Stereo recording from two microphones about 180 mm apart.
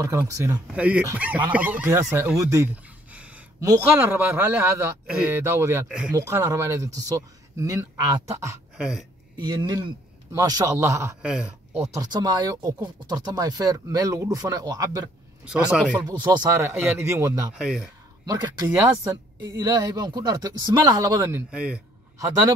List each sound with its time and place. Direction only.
0.0 s a man's voice: 15° right (ahead or behind)
6.1 s a man's voice: 15° right (ahead or behind)
8.7 s speech: 5° right (ahead or behind)
9.4 s speech: 25° right (ahead or behind)
11.2 s speech: 5° right (ahead or behind)
12.0 s speech: 20° right (ahead or behind)
15.4 s a man's voice: 5° right (ahead or behind)
16.0 s a man's voice: 25° right (ahead or behind)
17.6 s speech: 5° right (ahead or behind)
18.2 s a man's voice: 20° right (ahead or behind)